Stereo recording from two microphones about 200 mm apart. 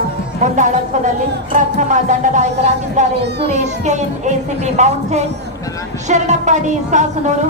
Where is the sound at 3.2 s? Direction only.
55° right (ahead or behind).